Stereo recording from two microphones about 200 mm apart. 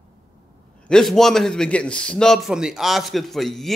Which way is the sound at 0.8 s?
Centre (ahead or behind).